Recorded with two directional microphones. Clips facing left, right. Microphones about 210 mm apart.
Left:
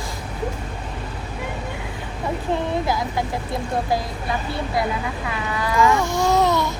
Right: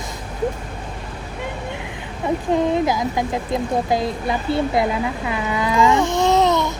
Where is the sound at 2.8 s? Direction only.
20° right (ahead or behind).